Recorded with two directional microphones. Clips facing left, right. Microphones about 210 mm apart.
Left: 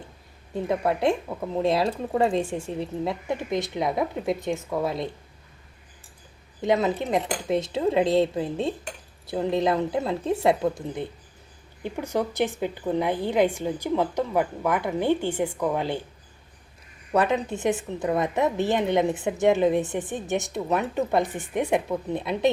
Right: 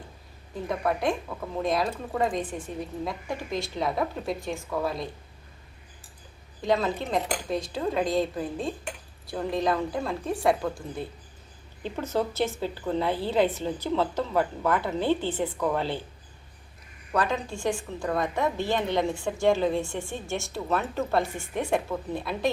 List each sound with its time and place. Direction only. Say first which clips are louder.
0.5 s a woman's voice: left 3 dB; 25° left (ahead or behind)
6.6 s a woman's voice: left 3 dB; 20° left (ahead or behind)
17.1 s a woman's voice: left 5 dB; 20° left (ahead or behind)